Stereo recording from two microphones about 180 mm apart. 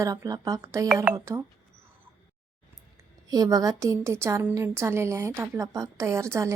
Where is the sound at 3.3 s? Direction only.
20° right (ahead or behind).